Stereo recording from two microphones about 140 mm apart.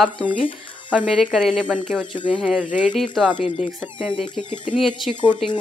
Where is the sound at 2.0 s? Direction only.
35° left (ahead or behind).